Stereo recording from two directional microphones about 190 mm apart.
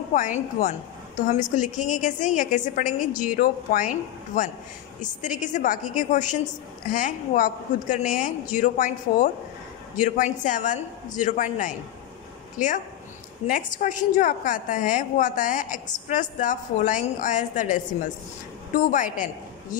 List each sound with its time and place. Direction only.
0.6 s a woman's voice: 40° left (ahead or behind)
5.0 s a woman's voice: 40° left (ahead or behind)
18.8 s a woman's voice: 40° left (ahead or behind)